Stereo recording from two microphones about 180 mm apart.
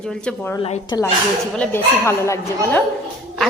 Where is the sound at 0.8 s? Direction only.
20° left (ahead or behind).